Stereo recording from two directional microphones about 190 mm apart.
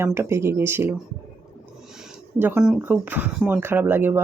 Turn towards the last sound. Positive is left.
turn(degrees=-10)  # may be behind; listen again after turning